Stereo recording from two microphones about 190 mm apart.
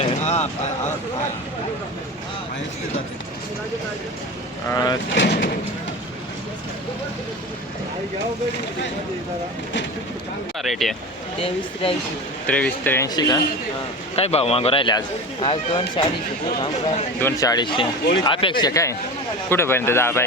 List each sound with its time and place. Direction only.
0.0 s a sound: 35° left (ahead or behind)
4.7 s speech: 20° left (ahead or behind)
5.1 s speech: 70° left (ahead or behind)
10.6 s speech: centre (ahead or behind)
11.3 s speech: 30° left (ahead or behind)
12.5 s a man's voice: 10° left (ahead or behind)
13.1 s speech: 20° left (ahead or behind)
14.2 s speech: 30° left (ahead or behind)
17.2 s a man's voice: 15° left (ahead or behind)